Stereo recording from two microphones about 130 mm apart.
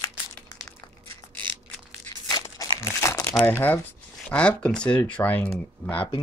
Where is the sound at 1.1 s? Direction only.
40° right (ahead or behind).